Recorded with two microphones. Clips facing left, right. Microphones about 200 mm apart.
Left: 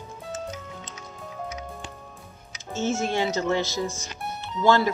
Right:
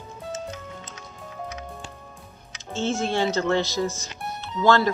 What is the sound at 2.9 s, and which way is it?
Music, 5° left (ahead or behind).